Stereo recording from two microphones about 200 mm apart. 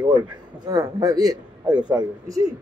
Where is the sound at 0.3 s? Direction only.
20° right (ahead or behind).